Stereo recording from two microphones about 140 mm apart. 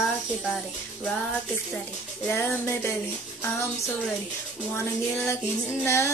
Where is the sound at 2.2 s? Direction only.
15° left (ahead or behind).